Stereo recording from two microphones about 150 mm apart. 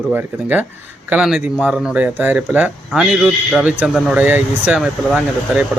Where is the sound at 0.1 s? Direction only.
15° right (ahead or behind).